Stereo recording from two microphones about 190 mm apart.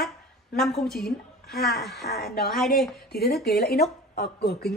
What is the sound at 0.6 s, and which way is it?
Speech, centre (ahead or behind).